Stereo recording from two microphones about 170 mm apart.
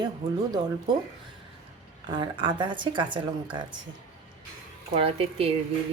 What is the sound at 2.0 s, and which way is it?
Speech, 30° right (ahead or behind).